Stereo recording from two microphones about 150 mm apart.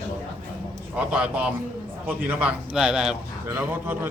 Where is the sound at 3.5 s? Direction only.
15° right (ahead or behind).